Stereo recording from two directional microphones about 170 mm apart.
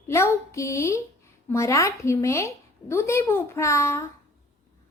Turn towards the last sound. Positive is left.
turn(degrees=15)  # may be behind; listen again after turning